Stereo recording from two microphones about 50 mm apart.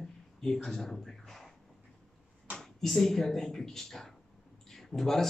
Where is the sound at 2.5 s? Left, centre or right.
Centre.